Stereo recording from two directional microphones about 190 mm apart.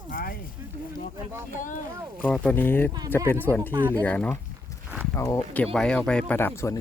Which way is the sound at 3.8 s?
10° right (ahead or behind).